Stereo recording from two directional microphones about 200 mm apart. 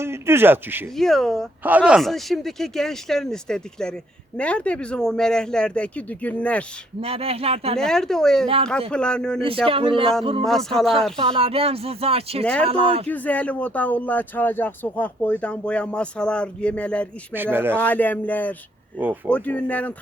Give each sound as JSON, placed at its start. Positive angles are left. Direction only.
{"t": 0.0, "sound": "a man's voice", "side_deg": -10}
{"t": 0.9, "sound": "speech", "side_deg": 0}
{"t": 7.0, "sound": "speech", "side_deg": -30}
{"t": 7.8, "sound": "speech", "side_deg": 5}
{"t": 9.6, "sound": "speech", "side_deg": -25}
{"t": 10.7, "sound": "speech", "side_deg": 0}
{"t": 11.2, "sound": "speech", "side_deg": -30}
{"t": 13.1, "sound": "speech", "side_deg": 10}
{"t": 17.3, "sound": "a man's voice", "side_deg": -10}
{"t": 17.7, "sound": "speech", "side_deg": 10}
{"t": 18.9, "sound": "a man's voice", "side_deg": -10}
{"t": 19.3, "sound": "speech", "side_deg": 5}